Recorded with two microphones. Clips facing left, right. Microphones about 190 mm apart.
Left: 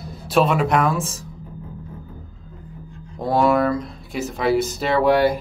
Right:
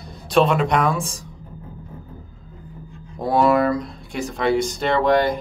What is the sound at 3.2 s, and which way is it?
Speech, centre (ahead or behind).